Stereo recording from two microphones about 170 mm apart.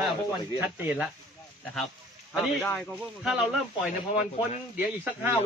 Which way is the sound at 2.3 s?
5° right (ahead or behind).